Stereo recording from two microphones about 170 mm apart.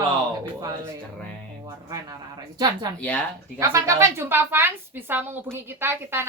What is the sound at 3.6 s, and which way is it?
A woman's voice, 15° right (ahead or behind).